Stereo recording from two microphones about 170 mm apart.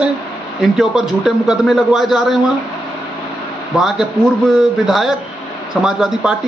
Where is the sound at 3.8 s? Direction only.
Centre (ahead or behind).